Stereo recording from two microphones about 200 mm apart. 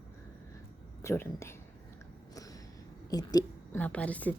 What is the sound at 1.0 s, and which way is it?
Speech, 15° left (ahead or behind).